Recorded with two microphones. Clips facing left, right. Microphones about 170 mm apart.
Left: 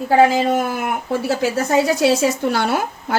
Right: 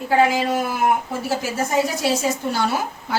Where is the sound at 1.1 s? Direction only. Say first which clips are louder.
Left 5 dB; 75° left (ahead or behind).